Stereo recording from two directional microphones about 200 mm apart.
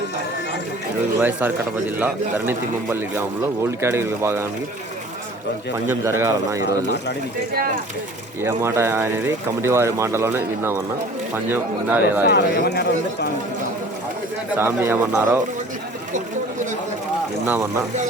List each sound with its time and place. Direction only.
1.2 s speech: 10° right (ahead or behind)
5.9 s speech: 10° right (ahead or behind)
8.4 s speech: 15° right (ahead or behind)
12.2 s speech: 55° left (ahead or behind)
14.6 s speech: 10° right (ahead or behind)
17.4 s speech: 15° right (ahead or behind)